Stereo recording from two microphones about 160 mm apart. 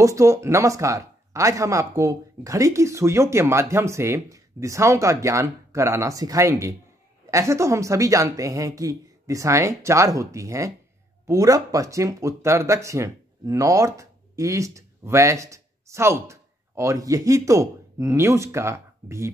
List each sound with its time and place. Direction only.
0.0 s speech: 20° right (ahead or behind)